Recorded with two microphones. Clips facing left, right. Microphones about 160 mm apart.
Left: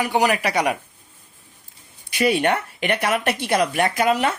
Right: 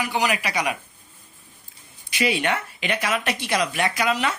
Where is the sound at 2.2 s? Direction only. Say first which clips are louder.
Left 4 dB; 50° left (ahead or behind).